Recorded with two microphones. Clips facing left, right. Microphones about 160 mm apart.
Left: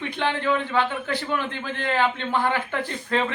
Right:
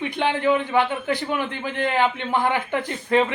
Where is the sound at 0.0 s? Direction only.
15° right (ahead or behind).